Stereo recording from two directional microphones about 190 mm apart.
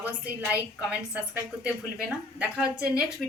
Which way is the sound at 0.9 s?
5° right (ahead or behind).